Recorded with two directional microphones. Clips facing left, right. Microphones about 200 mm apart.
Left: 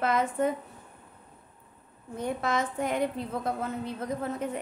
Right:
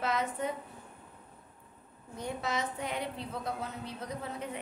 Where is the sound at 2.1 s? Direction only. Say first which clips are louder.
Left 6 dB; 55° left (ahead or behind).